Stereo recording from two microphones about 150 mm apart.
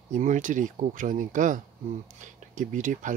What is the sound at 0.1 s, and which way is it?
Speech, 55° right (ahead or behind).